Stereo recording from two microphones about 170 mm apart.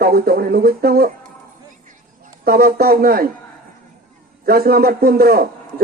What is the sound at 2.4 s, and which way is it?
Speech, 65° right (ahead or behind).